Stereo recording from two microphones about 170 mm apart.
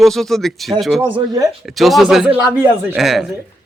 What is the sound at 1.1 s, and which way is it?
Speech, 25° right (ahead or behind).